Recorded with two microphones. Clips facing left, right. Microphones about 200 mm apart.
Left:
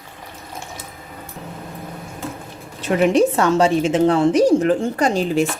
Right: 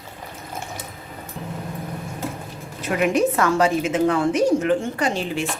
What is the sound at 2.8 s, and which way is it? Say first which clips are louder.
A woman's voice: left 4 dB; 30° left (ahead or behind).